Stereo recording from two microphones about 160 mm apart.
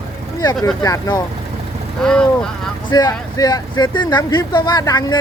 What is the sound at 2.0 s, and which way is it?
Speech, 5° left (ahead or behind).